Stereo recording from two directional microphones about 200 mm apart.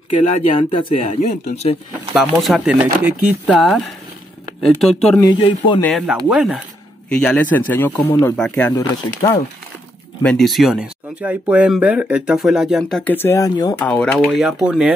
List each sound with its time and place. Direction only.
0.2 s speech: 30° left (ahead or behind)
2.1 s speech: centre (ahead or behind)
5.2 s speech: 20° left (ahead or behind)
5.8 s speech: centre (ahead or behind)
8.7 s speech: 15° left (ahead or behind)
10.2 s speech: centre (ahead or behind); by 13.8 s 20° left (ahead or behind)
13.8 s speech: 5° left (ahead or behind)